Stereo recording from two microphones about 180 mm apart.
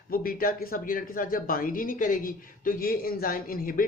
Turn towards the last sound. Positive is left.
turn(degrees=50)  # may be behind; listen again after turning